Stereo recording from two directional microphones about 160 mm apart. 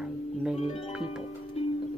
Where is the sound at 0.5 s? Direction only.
40° left (ahead or behind).